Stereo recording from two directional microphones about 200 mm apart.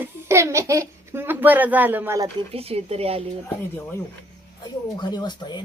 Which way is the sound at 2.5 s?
30° right (ahead or behind).